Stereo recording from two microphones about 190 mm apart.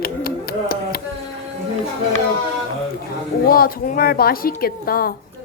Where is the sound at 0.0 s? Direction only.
50° left (ahead or behind).